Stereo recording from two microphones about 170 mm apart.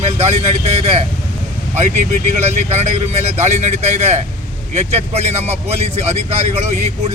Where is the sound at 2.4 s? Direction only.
40° right (ahead or behind).